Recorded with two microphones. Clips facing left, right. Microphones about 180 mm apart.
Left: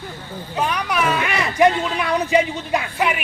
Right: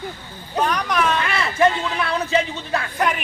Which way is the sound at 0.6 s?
10° left (ahead or behind).